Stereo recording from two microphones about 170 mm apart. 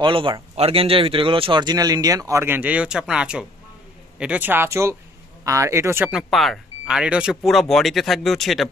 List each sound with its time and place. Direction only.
0.0 s speech: 30° right (ahead or behind); by 6.1 s 15° right (ahead or behind)
6.1 s speech: centre (ahead or behind)